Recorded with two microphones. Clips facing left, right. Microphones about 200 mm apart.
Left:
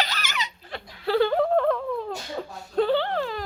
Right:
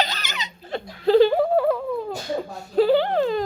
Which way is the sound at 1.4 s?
5° right (ahead or behind).